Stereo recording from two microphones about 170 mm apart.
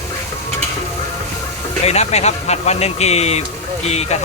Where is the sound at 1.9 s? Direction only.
40° left (ahead or behind).